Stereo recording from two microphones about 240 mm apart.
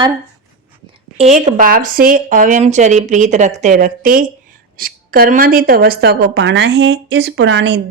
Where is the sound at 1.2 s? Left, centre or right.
Right.